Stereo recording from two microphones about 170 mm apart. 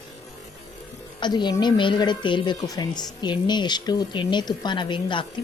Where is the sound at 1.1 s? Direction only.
25° left (ahead or behind).